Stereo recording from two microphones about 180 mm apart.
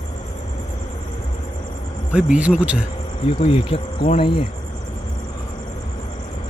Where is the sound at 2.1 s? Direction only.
5° right (ahead or behind).